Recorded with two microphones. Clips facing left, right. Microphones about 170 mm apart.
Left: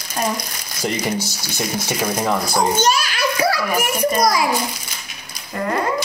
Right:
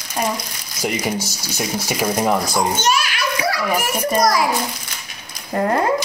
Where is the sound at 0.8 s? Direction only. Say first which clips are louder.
Even; 5° right (ahead or behind).